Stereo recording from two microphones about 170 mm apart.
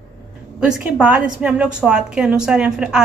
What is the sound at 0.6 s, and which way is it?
A woman's voice, 5° right (ahead or behind).